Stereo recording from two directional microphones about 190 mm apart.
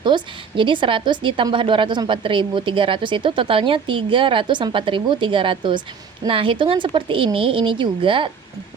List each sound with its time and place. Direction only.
0.0 s a woman's voice: 25° right (ahead or behind)